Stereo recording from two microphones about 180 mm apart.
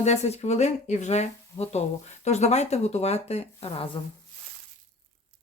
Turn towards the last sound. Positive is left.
turn(degrees=35)  # may be behind; listen again after turning